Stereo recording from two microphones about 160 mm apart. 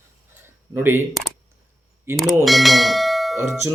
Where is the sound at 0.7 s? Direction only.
10° right (ahead or behind).